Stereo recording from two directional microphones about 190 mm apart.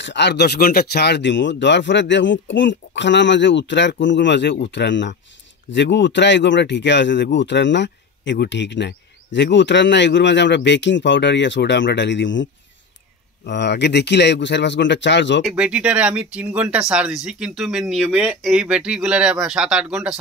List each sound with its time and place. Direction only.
0.0 s speech: 65° left (ahead or behind)
13.5 s speech: 65° left (ahead or behind)
15.4 s speech: 5° right (ahead or behind)